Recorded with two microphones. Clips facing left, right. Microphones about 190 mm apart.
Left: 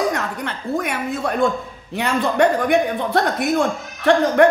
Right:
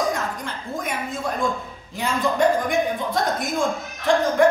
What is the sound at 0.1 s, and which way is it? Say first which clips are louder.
A woman's voice: left 3 dB; 70° left (ahead or behind).